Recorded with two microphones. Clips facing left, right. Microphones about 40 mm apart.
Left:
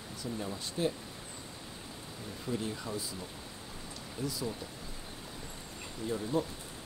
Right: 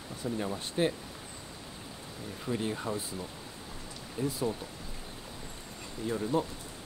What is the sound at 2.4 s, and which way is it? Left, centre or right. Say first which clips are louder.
Speech: right 4 dB; right.